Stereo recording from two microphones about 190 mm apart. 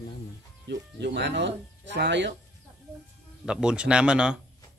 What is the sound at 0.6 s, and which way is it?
Speech, 65° right (ahead or behind).